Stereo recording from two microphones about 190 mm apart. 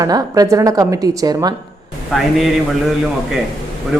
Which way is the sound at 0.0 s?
20° right (ahead or behind).